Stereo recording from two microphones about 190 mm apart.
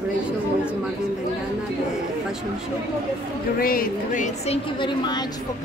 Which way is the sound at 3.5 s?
50° left (ahead or behind).